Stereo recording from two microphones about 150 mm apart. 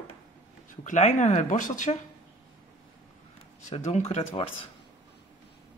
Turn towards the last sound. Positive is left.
turn(degrees=40)  # may be behind; listen again after turning